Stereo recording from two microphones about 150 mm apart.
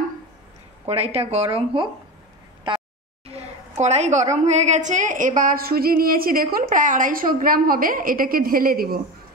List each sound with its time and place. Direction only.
0.8 s speech: 40° right (ahead or behind)
2.7 s a sound: 35° right (ahead or behind)
3.3 s a woman's voice: 45° right (ahead or behind); by 6.6 s 75° right (ahead or behind)
6.6 s a woman's voice: 60° right (ahead or behind); by 9.0 s 80° right